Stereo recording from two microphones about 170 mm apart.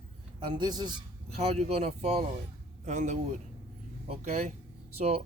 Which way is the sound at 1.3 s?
35° right (ahead or behind).